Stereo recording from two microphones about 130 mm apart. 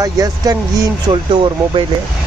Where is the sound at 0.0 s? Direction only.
30° right (ahead or behind).